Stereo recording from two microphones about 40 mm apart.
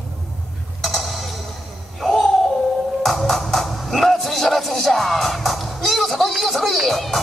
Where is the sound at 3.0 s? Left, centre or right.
Centre.